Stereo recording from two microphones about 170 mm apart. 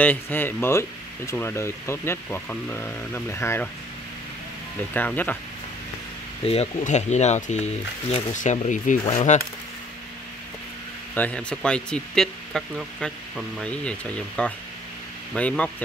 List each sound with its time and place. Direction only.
0.0 s speech: 10° left (ahead or behind)
4.9 s speech: 10° left (ahead or behind)
6.4 s speech: 35° left (ahead or behind)
11.1 s speech: 5° left (ahead or behind)